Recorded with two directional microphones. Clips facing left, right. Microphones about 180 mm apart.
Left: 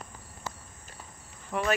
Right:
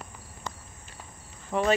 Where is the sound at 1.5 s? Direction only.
25° right (ahead or behind).